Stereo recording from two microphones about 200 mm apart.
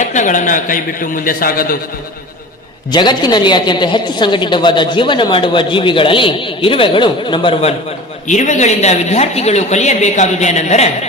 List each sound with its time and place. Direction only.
0.0 s a man's voice: 40° left (ahead or behind)
2.9 s a woman's voice: 20° left (ahead or behind)
8.3 s a woman's voice: 35° left (ahead or behind)